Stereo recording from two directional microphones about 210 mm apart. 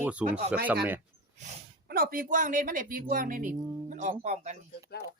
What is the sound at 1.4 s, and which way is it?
Speech, 45° right (ahead or behind).